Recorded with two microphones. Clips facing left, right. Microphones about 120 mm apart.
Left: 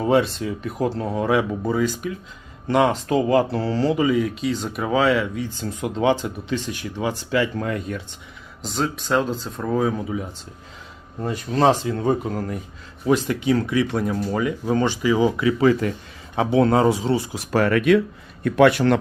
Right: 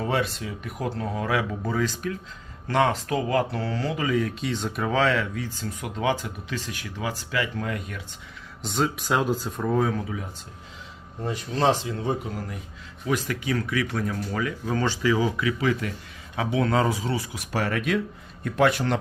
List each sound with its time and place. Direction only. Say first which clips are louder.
0.0 s speech: left 7 dB; 25° left (ahead or behind)
1.8 s speech: left 4 dB; 10° left (ahead or behind); by 3.9 s 30° left (ahead or behind)
3.9 s speech: left 5 dB; 15° left (ahead or behind); by 8.0 s 35° left (ahead or behind)
8.7 s speech: left 3 dB; 5° right (ahead or behind)
9.7 s speech: left 3 dB; 5° left (ahead or behind)
11.3 s speech: left 5 dB; 45° left (ahead or behind)
13.1 s speech: left 7 dB; 25° left (ahead or behind)
17.5 s speech: left 9 dB; 60° left (ahead or behind)